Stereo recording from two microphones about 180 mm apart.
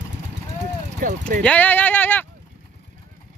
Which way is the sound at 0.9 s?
45° right (ahead or behind).